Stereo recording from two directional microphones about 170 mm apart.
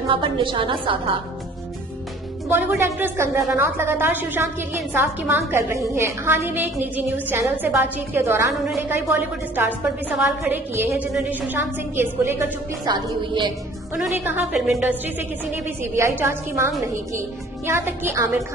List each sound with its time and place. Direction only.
0.1 s a woman's voice: 30° right (ahead or behind)
2.8 s a woman's voice: 15° right (ahead or behind)
13.9 s a woman's voice: 10° right (ahead or behind)